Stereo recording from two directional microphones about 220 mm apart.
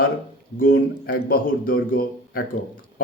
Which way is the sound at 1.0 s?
40° left (ahead or behind).